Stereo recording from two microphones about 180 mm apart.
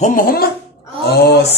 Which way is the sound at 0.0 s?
55° left (ahead or behind).